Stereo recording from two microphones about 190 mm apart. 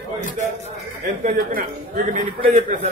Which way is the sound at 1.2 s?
50° right (ahead or behind).